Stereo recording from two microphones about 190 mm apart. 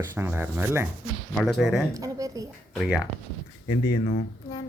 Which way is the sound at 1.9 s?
15° right (ahead or behind).